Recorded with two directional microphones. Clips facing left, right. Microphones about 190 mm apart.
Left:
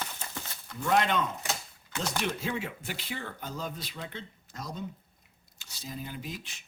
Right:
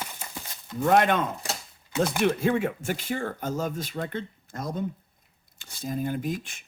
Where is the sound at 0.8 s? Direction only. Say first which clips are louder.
Right 5 dB; 55° right (ahead or behind).